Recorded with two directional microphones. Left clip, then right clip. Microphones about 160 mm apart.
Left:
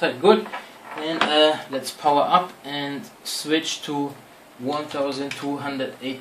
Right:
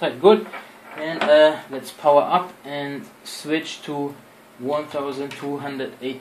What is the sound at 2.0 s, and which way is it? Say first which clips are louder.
Speech: right 2 dB; 25° right (ahead or behind).